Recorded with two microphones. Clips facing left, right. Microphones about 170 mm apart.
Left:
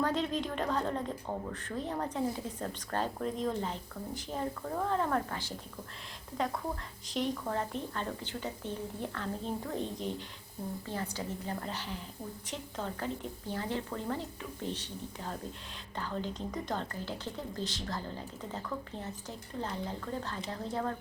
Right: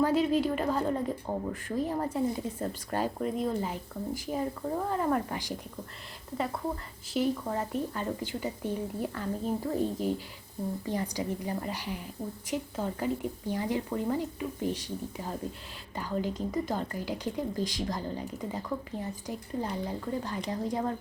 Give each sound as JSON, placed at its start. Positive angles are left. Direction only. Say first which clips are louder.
{"t": 0.0, "sound": "speech", "louder": "right 6 dB", "side_deg": -10}
{"t": 10.8, "sound": "speech", "louder": "right 6 dB", "side_deg": -15}